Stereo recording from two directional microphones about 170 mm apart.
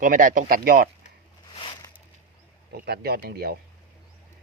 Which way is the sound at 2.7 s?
65° right (ahead or behind).